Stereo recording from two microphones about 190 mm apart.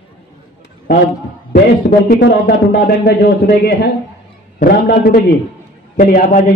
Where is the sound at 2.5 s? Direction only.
60° left (ahead or behind).